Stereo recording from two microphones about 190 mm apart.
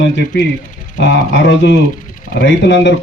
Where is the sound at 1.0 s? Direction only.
70° left (ahead or behind).